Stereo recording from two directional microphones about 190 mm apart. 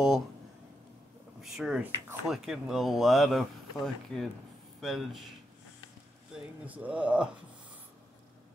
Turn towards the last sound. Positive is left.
turn(degrees=-5)  # may be behind; listen again after turning